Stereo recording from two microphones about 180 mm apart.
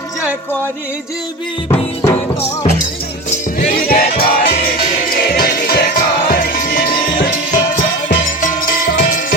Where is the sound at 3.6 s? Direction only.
55° left (ahead or behind).